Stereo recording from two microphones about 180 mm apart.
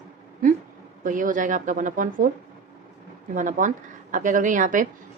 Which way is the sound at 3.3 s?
45° right (ahead or behind).